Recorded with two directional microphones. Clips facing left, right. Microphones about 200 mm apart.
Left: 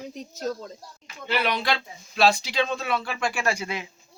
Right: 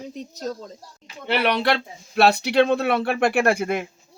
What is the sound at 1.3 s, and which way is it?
Speech, 65° right (ahead or behind).